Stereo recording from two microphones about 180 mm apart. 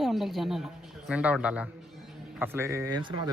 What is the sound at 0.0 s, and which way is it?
Speech, centre (ahead or behind).